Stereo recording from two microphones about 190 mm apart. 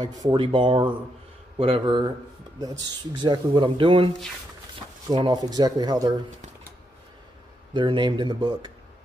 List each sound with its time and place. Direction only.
0.0 s speech: 20° right (ahead or behind)
5.1 s speech: 20° right (ahead or behind)
7.7 s speech: 25° right (ahead or behind)